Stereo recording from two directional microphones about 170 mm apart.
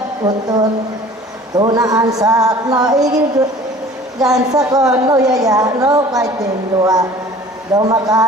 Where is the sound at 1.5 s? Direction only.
20° right (ahead or behind).